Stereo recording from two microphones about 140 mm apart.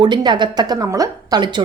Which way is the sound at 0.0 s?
30° right (ahead or behind).